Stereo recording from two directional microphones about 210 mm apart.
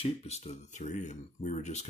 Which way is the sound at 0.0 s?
30° left (ahead or behind).